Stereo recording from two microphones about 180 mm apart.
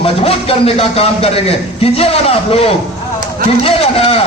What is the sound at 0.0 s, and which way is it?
A man's voice, 30° left (ahead or behind).